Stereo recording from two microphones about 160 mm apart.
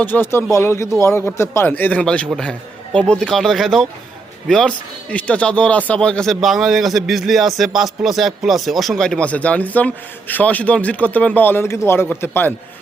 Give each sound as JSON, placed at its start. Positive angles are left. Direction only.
{"t": 0.0, "sound": "a man's voice", "side_deg": 15}